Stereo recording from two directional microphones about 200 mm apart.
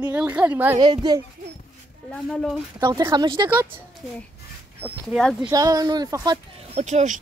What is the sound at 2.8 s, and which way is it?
Speech, 20° right (ahead or behind).